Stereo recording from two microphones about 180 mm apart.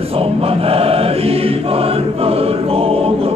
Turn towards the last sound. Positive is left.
turn(degrees=-30)  # may be behind; listen again after turning